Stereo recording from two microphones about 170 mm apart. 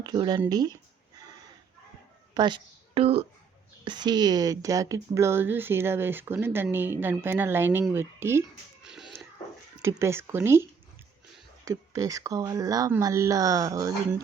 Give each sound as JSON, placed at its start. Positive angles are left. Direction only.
{"t": 0.0, "sound": "speech", "side_deg": -25}
{"t": 2.3, "sound": "a woman's voice", "side_deg": -25}
{"t": 8.8, "sound": "a sound", "side_deg": -5}
{"t": 9.8, "sound": "speech", "side_deg": -15}